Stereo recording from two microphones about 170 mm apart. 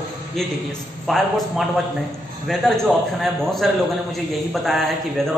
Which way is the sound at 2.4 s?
Centre (ahead or behind).